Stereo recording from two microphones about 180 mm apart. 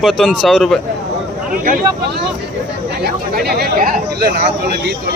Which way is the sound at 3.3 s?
55° right (ahead or behind).